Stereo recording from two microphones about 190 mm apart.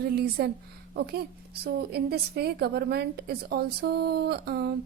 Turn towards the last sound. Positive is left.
turn(degrees=-55)  # may be behind; listen again after turning